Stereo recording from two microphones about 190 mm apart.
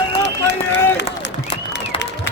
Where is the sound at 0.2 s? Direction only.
65° left (ahead or behind).